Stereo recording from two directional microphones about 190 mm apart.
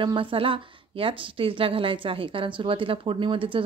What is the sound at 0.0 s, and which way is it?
Speech, 25° right (ahead or behind).